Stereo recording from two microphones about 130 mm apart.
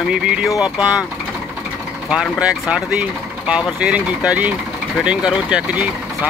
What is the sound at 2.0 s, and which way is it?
Speech, 5° right (ahead or behind).